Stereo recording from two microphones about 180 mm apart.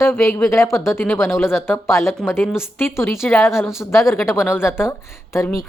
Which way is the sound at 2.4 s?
5° right (ahead or behind).